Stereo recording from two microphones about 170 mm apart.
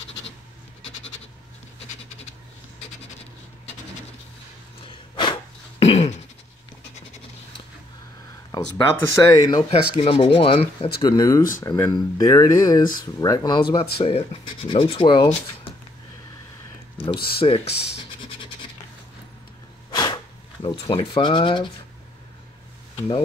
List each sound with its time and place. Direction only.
4.8 s throat clearing: 30° left (ahead or behind)
8.5 s speech: 20° left (ahead or behind)
17.4 s speech: 35° left (ahead or behind)
19.9 s a sound: 25° left (ahead or behind)
20.6 s speech: 30° left (ahead or behind)